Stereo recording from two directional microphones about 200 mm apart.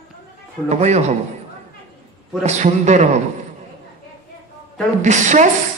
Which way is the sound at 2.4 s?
35° right (ahead or behind).